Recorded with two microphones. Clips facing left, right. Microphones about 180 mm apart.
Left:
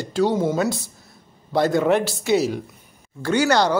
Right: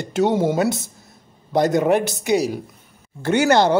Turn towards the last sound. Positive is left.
turn(degrees=-20)  # may be behind; listen again after turning